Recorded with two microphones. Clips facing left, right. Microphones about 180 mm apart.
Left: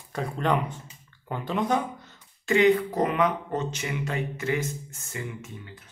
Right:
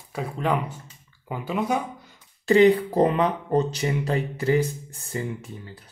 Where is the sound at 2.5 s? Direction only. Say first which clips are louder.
Right 4 dB; 35° right (ahead or behind).